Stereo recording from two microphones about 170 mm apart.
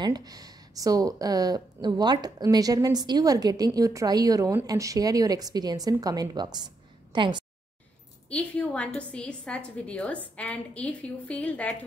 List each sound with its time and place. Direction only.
0.0 s speech: 25° right (ahead or behind)
8.3 s a woman's voice: 5° left (ahead or behind)